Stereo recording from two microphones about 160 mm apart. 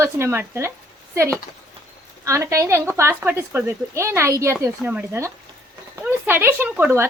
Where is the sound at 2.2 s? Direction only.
20° right (ahead or behind).